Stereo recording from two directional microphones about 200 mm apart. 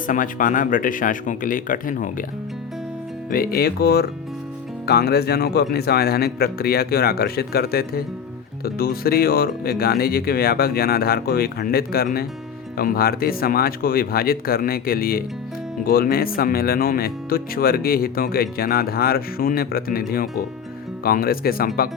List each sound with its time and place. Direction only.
0.1 s speech: 40° left (ahead or behind)
3.2 s speech: 45° left (ahead or behind)